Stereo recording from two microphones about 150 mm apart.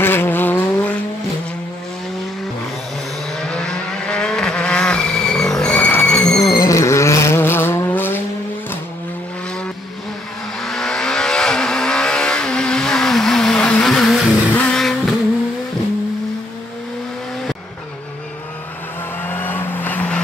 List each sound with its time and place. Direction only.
0.0 s vehicle: 15° left (ahead or behind)
3.3 s vehicle: 5° left (ahead or behind)
6.5 s vehicle: 20° left (ahead or behind)
10.6 s vehicle: 5° left (ahead or behind)
19.2 s vehicle: 15° left (ahead or behind)